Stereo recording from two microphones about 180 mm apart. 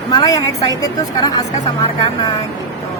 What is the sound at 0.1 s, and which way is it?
A woman's voice, 20° left (ahead or behind).